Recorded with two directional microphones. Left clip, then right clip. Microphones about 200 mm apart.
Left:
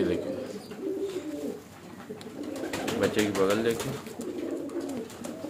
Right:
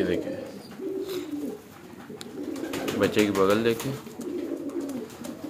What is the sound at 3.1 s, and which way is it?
Speech, 30° right (ahead or behind).